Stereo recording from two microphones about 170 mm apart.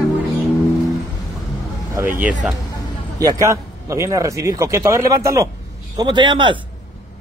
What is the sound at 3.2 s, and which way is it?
A man's voice, 20° right (ahead or behind).